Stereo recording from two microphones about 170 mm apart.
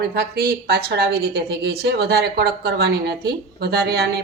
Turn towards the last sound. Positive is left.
turn(degrees=-75)  # may be behind; listen again after turning